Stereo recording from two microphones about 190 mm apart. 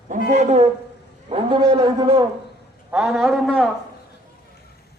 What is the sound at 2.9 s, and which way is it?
Speech, 5° right (ahead or behind).